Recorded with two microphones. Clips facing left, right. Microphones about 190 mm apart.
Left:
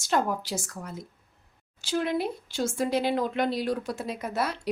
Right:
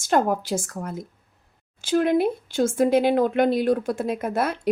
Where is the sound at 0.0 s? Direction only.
50° right (ahead or behind).